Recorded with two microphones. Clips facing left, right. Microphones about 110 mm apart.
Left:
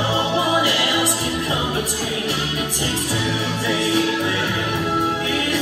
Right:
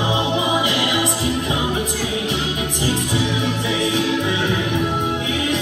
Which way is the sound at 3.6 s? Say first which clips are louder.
Left 3 dB; 20° right (ahead or behind).